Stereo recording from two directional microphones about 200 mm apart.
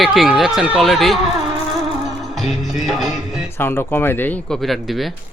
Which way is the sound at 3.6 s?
10° left (ahead or behind).